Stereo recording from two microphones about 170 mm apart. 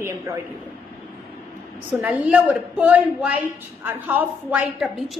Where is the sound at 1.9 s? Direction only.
5° right (ahead or behind).